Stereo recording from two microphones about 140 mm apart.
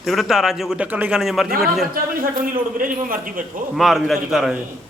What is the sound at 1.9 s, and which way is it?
A man's voice, 85° right.